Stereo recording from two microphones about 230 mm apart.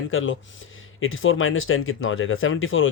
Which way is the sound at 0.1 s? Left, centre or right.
Left.